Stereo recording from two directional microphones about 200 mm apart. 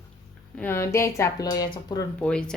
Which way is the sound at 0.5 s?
10° left (ahead or behind).